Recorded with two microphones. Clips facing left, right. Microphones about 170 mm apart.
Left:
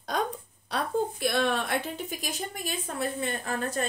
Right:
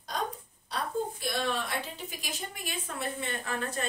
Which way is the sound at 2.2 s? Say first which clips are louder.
Left 5 dB; 40° left (ahead or behind).